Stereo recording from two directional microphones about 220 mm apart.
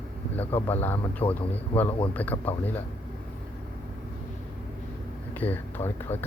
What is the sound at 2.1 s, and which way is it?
Speech, 5° left (ahead or behind).